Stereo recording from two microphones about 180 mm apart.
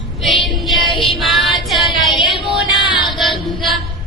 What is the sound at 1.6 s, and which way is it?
Female singing, centre (ahead or behind).